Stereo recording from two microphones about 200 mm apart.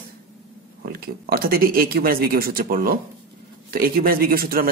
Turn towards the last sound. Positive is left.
turn(degrees=-50)  # may be behind; listen again after turning